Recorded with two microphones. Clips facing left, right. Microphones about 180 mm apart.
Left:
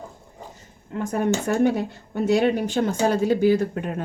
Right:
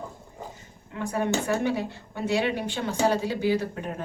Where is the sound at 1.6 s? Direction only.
50° left (ahead or behind).